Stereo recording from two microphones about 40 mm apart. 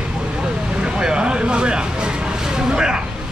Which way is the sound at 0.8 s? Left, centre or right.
Right.